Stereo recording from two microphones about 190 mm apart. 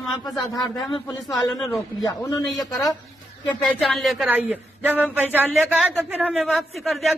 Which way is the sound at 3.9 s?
Centre (ahead or behind).